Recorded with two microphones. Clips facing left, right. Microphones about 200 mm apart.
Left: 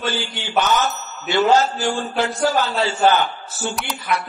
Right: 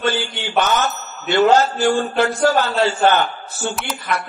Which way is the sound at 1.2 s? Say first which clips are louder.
Right 3 dB; 60° right (ahead or behind).